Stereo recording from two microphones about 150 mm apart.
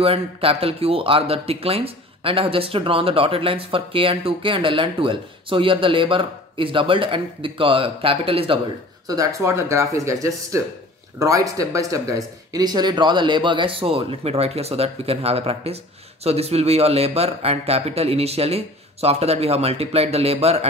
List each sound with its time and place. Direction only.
0.0 s speech: 40° right (ahead or behind)
9.0 s speech: 25° right (ahead or behind); by 20.6 s 45° right (ahead or behind)